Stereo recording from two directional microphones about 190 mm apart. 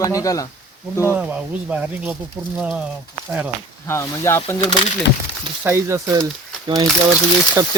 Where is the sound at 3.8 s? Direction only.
15° left (ahead or behind).